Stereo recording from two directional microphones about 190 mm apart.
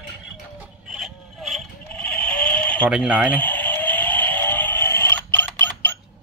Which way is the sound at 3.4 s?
10° left (ahead or behind).